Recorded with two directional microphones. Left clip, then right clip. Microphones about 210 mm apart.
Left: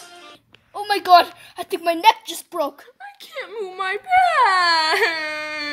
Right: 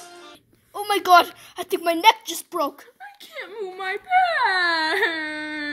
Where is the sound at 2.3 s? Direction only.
5° right (ahead or behind).